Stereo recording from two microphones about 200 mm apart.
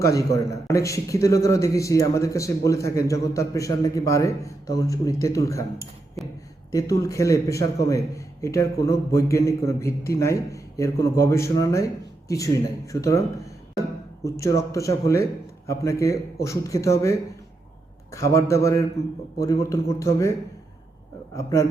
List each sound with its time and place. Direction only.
0.0 s a man's voice: 15° left (ahead or behind)
6.7 s a man's voice: 15° left (ahead or behind)
14.3 s a man's voice: 15° left (ahead or behind)
21.3 s a man's voice: 15° left (ahead or behind)